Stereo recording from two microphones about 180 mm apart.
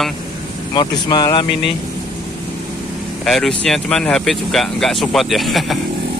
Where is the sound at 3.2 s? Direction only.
Centre (ahead or behind).